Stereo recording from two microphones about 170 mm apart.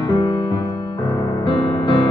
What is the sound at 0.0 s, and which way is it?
Music, 30° left (ahead or behind).